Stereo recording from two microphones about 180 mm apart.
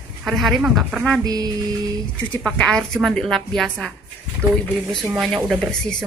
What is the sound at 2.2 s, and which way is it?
A woman's voice, 5° left (ahead or behind).